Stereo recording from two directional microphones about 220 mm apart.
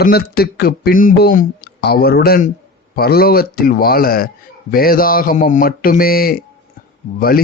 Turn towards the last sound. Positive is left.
turn(degrees=45)  # may be behind; listen again after turning